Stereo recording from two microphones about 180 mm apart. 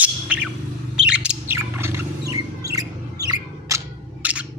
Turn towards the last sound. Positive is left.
turn(degrees=-10)  # may be behind; listen again after turning